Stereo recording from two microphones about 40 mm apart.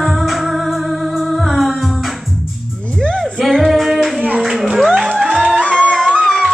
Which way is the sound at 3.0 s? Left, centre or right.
Centre.